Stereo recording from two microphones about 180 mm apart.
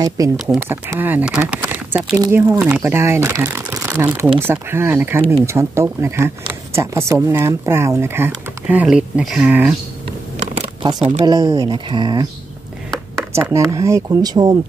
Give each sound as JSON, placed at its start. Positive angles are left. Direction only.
{"t": 0.5, "sound": "speech", "side_deg": -10}
{"t": 2.1, "sound": "speech", "side_deg": -20}
{"t": 10.0, "sound": "a sound", "side_deg": -35}
{"t": 10.9, "sound": "speech", "side_deg": -25}
{"t": 13.3, "sound": "speech", "side_deg": -15}